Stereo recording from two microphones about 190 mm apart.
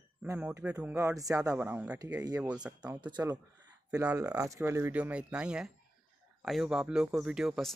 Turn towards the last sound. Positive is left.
turn(degrees=0)  # may be behind; listen again after turning